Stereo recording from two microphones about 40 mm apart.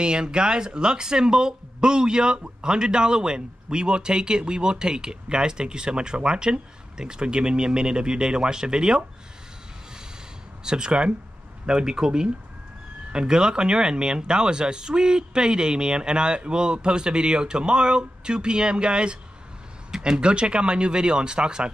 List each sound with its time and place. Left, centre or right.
0.0 s speech: right
10.6 s speech: centre